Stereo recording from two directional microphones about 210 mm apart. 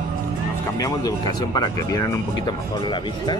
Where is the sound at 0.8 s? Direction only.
15° left (ahead or behind).